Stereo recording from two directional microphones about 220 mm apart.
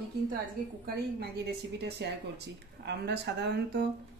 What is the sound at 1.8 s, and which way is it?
A woman's voice, 50° right (ahead or behind).